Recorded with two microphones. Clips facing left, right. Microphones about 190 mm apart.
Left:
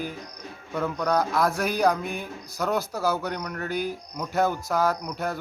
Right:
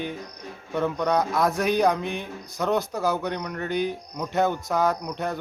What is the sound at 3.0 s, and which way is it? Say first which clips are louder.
Speech: right 1 dB; 15° right (ahead or behind).